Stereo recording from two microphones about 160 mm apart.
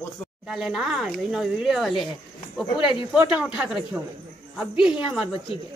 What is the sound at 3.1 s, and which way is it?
Speech, 5° right (ahead or behind).